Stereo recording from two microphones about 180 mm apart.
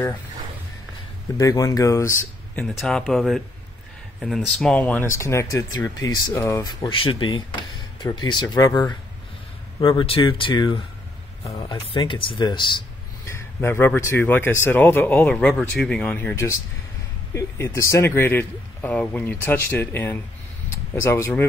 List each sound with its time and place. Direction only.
1.4 s speech: 20° left (ahead or behind)
2.8 s speech: centre (ahead or behind); by 12.7 s 25° left (ahead or behind)
13.2 s speech: 15° left (ahead or behind)